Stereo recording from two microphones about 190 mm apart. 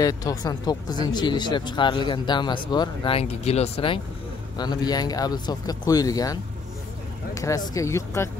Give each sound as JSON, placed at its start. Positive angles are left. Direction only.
{"t": 0.0, "sound": "speech", "side_deg": 20}